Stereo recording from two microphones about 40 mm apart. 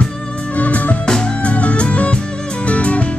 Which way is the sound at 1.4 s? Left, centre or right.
Left.